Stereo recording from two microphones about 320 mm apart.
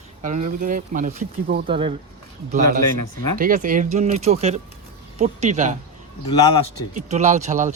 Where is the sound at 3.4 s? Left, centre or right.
Right.